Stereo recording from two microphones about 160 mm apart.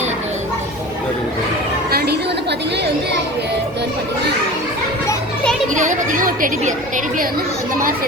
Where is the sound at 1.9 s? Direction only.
90° right.